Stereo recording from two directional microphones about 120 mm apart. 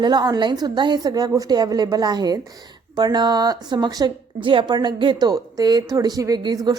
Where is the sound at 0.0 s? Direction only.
35° right (ahead or behind).